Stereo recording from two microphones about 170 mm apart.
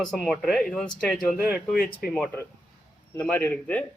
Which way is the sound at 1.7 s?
60° left (ahead or behind).